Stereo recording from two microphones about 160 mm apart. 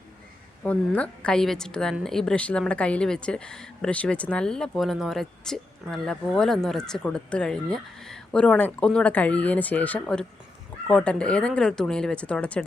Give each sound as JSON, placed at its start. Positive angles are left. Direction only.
{"t": 0.6, "sound": "a woman's voice", "side_deg": 10}